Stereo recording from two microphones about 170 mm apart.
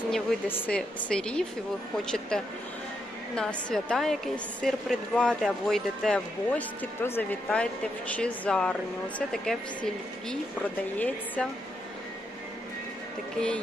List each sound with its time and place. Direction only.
0.1 s a woman's voice: 10° left (ahead or behind)